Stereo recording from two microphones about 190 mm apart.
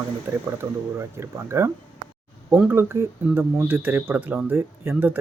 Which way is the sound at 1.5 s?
15° right (ahead or behind).